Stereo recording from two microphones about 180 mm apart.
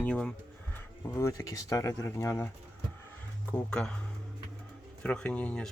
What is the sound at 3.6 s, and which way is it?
Speech, 5° left (ahead or behind).